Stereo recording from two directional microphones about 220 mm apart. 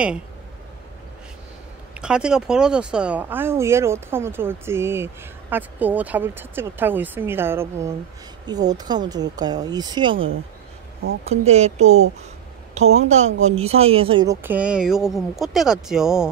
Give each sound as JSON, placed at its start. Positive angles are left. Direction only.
{"t": 2.0, "sound": "speech", "side_deg": -5}
{"t": 10.1, "sound": "speech", "side_deg": -65}
{"t": 11.2, "sound": "speech", "side_deg": -30}